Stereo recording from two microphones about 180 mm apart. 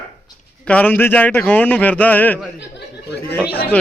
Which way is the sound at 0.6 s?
10° left (ahead or behind).